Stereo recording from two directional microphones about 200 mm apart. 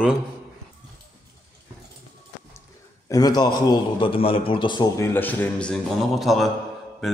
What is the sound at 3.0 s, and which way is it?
A man's voice, 20° left (ahead or behind).